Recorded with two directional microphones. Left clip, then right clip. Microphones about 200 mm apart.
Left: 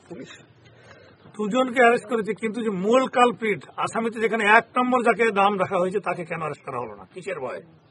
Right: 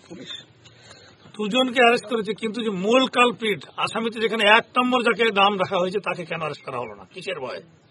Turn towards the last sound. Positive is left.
turn(degrees=5)  # may be behind; listen again after turning